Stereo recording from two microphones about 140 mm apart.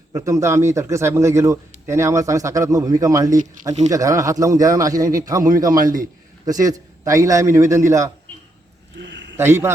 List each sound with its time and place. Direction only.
0.1 s speech: 20° right (ahead or behind)
5.8 s a man's voice: 75° right (ahead or behind)
6.4 s speech: 25° right (ahead or behind)
9.3 s a man's voice: 20° right (ahead or behind)